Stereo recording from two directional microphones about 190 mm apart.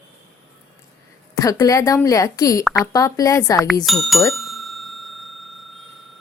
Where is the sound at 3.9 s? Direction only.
Centre (ahead or behind).